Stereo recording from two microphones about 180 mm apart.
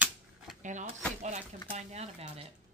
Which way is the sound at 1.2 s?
40° right (ahead or behind).